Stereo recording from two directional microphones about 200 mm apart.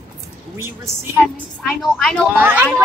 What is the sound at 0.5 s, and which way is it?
Speech, 15° right (ahead or behind).